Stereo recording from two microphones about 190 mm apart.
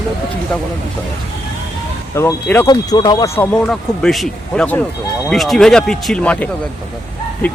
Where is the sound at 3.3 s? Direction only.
5° left (ahead or behind).